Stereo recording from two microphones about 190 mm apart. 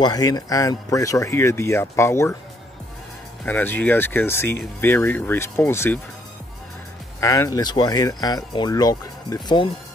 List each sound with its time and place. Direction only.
0.0 s speech: 20° left (ahead or behind)
3.4 s speech: 10° left (ahead or behind)
7.2 s speech: 15° left (ahead or behind)